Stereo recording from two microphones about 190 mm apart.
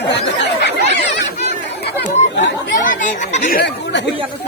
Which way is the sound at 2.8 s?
40° left (ahead or behind).